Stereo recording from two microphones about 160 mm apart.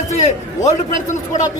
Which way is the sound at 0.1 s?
45° left (ahead or behind).